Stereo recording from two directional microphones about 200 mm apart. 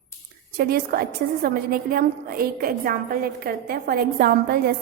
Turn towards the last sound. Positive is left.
turn(degrees=-50)  # may be behind; listen again after turning